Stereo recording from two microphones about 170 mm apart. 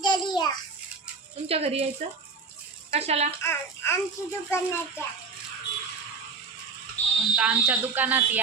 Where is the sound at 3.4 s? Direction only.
15° left (ahead or behind).